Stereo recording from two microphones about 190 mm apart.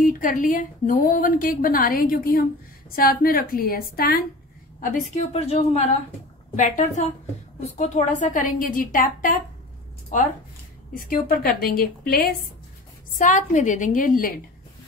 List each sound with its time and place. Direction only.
0.0 s a woman's voice: 45° left (ahead or behind)
4.9 s a woman's voice: 35° left (ahead or behind)